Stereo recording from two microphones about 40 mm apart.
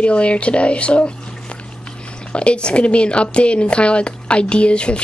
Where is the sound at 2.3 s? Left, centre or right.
Left.